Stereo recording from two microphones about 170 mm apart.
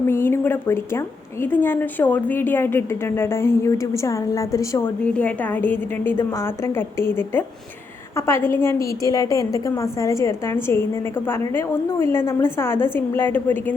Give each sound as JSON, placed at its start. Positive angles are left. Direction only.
{"t": 0.1, "sound": "a woman's voice", "side_deg": 15}